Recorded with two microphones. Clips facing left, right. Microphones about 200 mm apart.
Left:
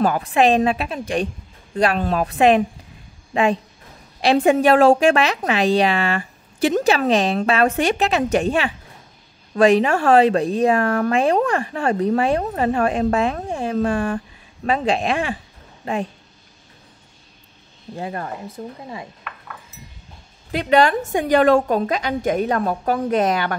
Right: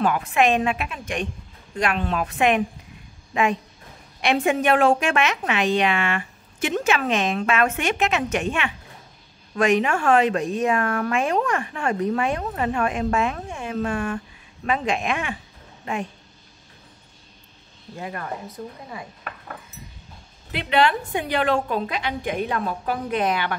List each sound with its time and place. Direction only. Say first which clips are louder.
0.0 s speech: left 3 dB; 35° left (ahead or behind)
17.9 s a woman's voice: left 3 dB; 30° left (ahead or behind)
19.2 s cutlery: right 1 dB; 40° right (ahead or behind)
20.5 s a woman's voice: left 5 dB; 45° left (ahead or behind)